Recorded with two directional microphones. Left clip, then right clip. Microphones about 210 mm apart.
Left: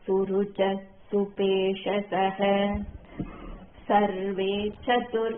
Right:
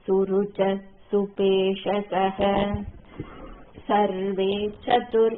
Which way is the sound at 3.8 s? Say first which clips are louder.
Right 1 dB; 40° right (ahead or behind).